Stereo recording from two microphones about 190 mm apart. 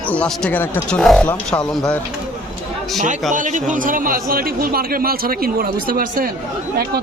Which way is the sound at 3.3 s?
40° right (ahead or behind).